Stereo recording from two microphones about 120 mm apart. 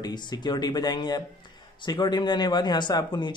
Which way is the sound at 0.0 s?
35° left (ahead or behind).